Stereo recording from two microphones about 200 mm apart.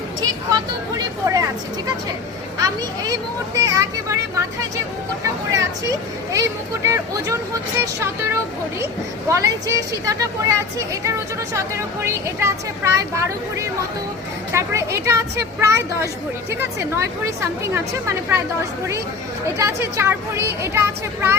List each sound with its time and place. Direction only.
0.9 s a sound: 15° right (ahead or behind)
2.6 s speech: 15° right (ahead or behind)
6.3 s speech: 15° right (ahead or behind)
19.5 s speech: 10° right (ahead or behind)